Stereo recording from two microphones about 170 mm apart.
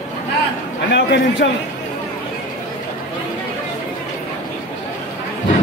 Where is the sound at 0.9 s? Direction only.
90° left.